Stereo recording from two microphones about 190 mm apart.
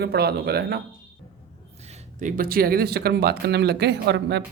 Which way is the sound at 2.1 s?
45° right (ahead or behind).